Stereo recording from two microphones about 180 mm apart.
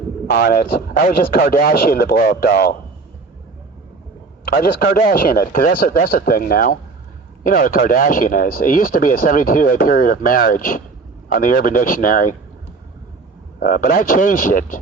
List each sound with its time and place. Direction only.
0.3 s speech: 60° left (ahead or behind)
4.4 s speech: 55° left (ahead or behind)
13.6 s speech: 50° left (ahead or behind)